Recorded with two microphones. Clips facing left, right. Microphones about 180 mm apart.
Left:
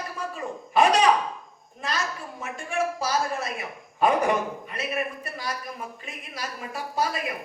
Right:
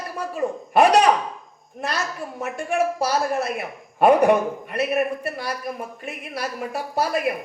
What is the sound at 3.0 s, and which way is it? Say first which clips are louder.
A man's voice: right 5 dB; 60° right (ahead or behind).